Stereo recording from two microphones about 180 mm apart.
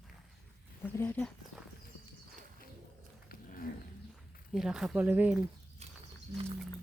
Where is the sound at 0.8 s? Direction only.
10° left (ahead or behind).